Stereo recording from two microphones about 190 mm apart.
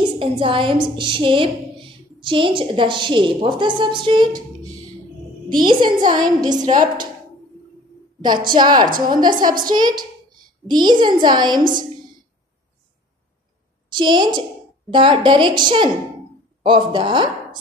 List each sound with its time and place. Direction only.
0.2 s a woman's voice: 25° right (ahead or behind)
5.5 s a woman's voice: 25° right (ahead or behind)
8.2 s a woman's voice: 25° right (ahead or behind)
13.8 s a woman's voice: 25° right (ahead or behind)